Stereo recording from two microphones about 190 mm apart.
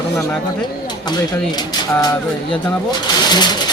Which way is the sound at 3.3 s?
20° left (ahead or behind).